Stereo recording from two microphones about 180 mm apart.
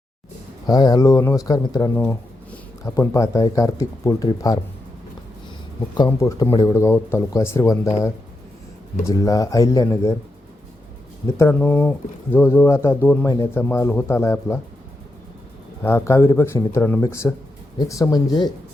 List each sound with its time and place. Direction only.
0.7 s speech: 20° left (ahead or behind)
6.0 s speech: 15° left (ahead or behind)
9.0 s speech: 20° left (ahead or behind)
11.3 s speech: 15° left (ahead or behind)
15.8 s speech: 15° left (ahead or behind)